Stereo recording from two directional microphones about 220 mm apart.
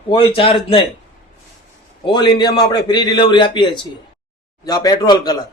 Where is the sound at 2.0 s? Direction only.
20° left (ahead or behind).